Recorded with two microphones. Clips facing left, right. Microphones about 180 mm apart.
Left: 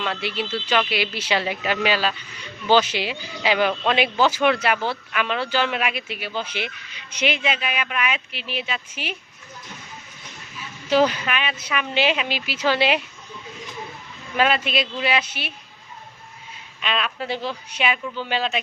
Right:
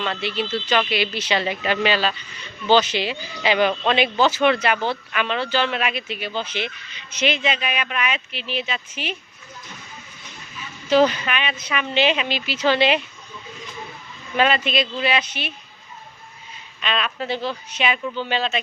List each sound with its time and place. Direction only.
0.0 s speech: 10° left (ahead or behind)
10.8 s speech: 10° left (ahead or behind)
14.3 s speech: 5° left (ahead or behind)
16.8 s speech: 5° left (ahead or behind)